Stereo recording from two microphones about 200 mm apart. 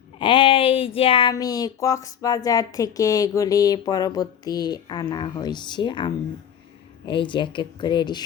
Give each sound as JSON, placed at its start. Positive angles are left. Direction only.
{"t": 0.2, "sound": "speech", "side_deg": 25}